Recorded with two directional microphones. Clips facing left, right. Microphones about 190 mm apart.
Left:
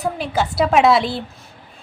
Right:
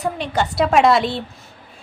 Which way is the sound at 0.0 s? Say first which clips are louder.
Even; centre (ahead or behind).